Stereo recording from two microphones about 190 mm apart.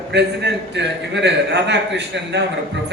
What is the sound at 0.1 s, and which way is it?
A man's voice, 65° right (ahead or behind).